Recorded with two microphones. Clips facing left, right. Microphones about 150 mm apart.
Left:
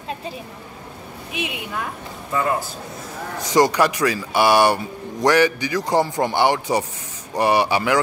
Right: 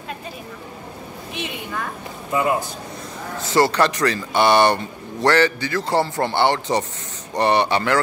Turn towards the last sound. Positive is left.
turn(degrees=10)  # may be behind; listen again after turning